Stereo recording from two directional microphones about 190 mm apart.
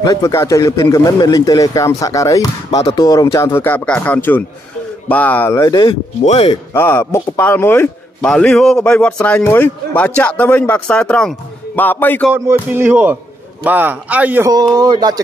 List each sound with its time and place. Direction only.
0.0 s a man's voice: 15° left (ahead or behind)
2.7 s speech: 35° left (ahead or behind)
3.0 s a man's voice: 20° left (ahead or behind)
6.5 s a man's voice: 10° left (ahead or behind)
12.3 s speech: 10° right (ahead or behind)
14.5 s speech: 20° right (ahead or behind)